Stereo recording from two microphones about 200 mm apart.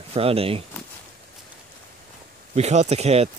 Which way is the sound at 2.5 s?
35° right (ahead or behind).